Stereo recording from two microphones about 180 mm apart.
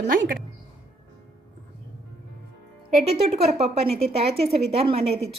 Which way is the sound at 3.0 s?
35° right (ahead or behind).